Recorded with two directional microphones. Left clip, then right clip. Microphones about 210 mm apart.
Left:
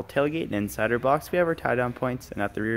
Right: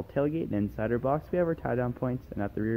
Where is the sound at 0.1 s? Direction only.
10° left (ahead or behind).